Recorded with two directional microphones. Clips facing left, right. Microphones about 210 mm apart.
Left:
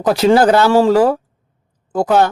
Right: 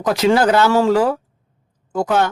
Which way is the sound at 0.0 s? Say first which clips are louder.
Left 4 dB; 30° left (ahead or behind).